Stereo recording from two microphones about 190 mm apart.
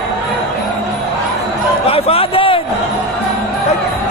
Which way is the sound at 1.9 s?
30° left (ahead or behind).